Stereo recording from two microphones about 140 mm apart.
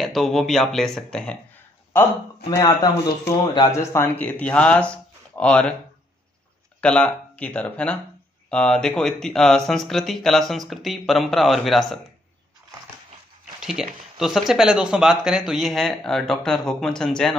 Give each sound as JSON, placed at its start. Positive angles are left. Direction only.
{"t": 0.0, "sound": "speech", "side_deg": 0}
{"t": 2.5, "sound": "speech", "side_deg": 20}
{"t": 6.8, "sound": "speech", "side_deg": 10}
{"t": 13.6, "sound": "speech", "side_deg": -5}